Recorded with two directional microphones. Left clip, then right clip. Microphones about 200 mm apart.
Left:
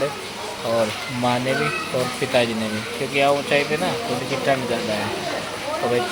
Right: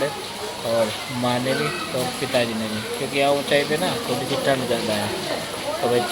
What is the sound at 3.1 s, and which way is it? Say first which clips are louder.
Speech: left 2 dB; 20° left (ahead or behind).